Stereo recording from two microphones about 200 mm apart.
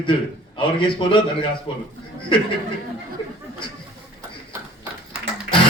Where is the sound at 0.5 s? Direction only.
25° left (ahead or behind).